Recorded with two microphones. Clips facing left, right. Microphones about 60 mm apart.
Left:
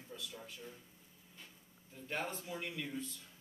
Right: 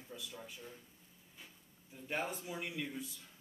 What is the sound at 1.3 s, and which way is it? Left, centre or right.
Speech, centre.